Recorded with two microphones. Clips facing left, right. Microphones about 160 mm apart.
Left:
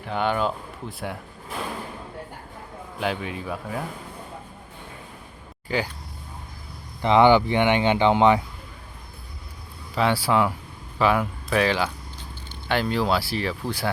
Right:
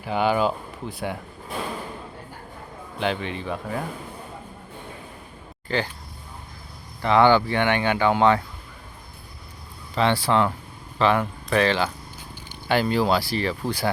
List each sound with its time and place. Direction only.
0.0 s speech: 5° right (ahead or behind)
3.0 s speech: 5° left (ahead or behind)
5.6 s speech: 10° left (ahead or behind)
7.0 s speech: 20° left (ahead or behind)
9.9 s speech: 5° left (ahead or behind)